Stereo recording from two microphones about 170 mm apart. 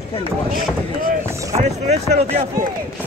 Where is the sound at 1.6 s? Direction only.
40° right (ahead or behind).